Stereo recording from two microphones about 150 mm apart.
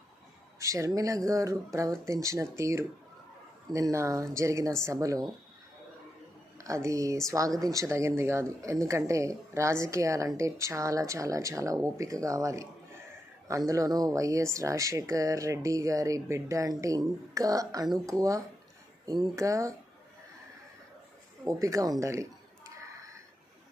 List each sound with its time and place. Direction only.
0.6 s a woman's voice: 20° right (ahead or behind)
6.6 s a woman's voice: 20° right (ahead or behind)
21.5 s a woman's voice: 20° right (ahead or behind)